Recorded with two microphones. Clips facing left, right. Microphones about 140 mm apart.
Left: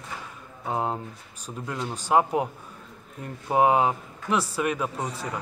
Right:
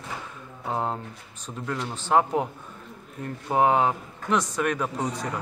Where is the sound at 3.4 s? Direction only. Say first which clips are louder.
Left 1 dB; 10° left (ahead or behind).